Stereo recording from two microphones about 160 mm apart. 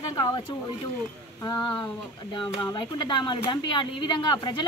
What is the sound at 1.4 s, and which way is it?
Speech, 25° left (ahead or behind).